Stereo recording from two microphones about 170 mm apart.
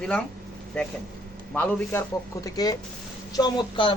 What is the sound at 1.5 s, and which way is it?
A man's voice, 15° left (ahead or behind).